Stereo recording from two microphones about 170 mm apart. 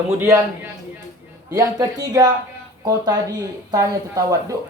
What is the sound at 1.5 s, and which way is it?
Speech, 20° right (ahead or behind).